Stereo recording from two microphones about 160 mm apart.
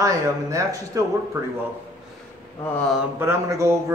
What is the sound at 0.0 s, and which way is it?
Speech, 20° right (ahead or behind).